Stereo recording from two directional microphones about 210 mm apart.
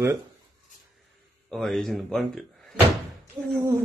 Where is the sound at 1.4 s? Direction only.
Centre (ahead or behind).